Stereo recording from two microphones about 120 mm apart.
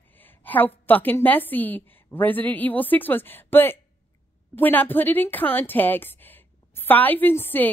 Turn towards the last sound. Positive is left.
turn(degrees=15)  # may be behind; listen again after turning